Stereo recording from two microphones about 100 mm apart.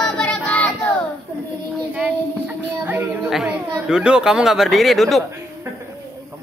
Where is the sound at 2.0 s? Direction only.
15° right (ahead or behind).